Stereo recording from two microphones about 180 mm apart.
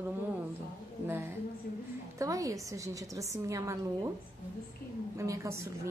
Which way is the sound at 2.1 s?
20° right (ahead or behind).